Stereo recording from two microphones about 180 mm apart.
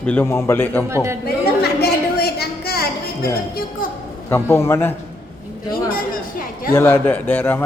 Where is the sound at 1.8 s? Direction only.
60° left (ahead or behind).